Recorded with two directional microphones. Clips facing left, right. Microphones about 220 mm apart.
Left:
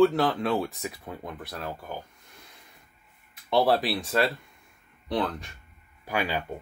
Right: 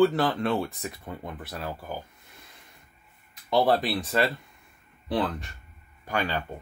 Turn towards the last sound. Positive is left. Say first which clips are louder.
# even
turn(degrees=10)  # may be behind; listen again after turning